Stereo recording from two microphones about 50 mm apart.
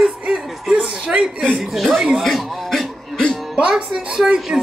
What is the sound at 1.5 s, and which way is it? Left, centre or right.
Speech, centre.